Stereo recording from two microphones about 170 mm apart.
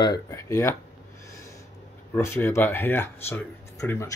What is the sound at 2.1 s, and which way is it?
Speech, 15° left (ahead or behind).